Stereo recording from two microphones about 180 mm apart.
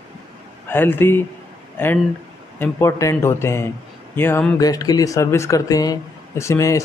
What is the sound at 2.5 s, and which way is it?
Speech, 15° left (ahead or behind).